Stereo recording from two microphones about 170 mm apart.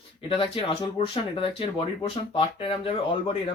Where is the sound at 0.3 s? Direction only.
30° left (ahead or behind).